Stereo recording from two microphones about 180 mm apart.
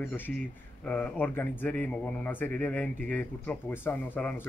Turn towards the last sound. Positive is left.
turn(degrees=10)  # may be behind; listen again after turning